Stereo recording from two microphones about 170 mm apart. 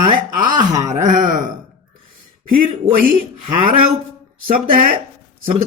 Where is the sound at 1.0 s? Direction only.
45° right (ahead or behind).